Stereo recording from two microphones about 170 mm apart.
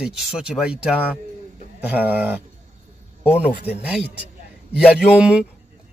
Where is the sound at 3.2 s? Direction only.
35° left (ahead or behind).